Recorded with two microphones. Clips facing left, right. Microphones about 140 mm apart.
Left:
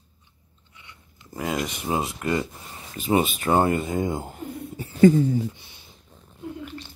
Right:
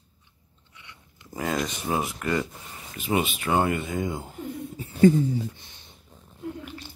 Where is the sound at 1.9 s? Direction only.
20° left (ahead or behind).